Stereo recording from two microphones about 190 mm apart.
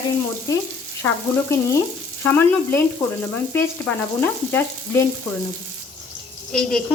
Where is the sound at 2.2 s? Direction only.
10° left (ahead or behind).